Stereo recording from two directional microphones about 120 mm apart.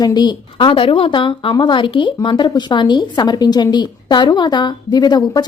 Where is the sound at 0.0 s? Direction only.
35° left (ahead or behind).